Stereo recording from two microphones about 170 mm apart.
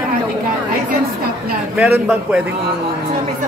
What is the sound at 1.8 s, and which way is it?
Speech, 5° right (ahead or behind).